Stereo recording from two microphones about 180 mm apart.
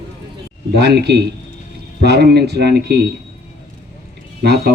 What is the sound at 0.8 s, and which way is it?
Speech, 65° right (ahead or behind).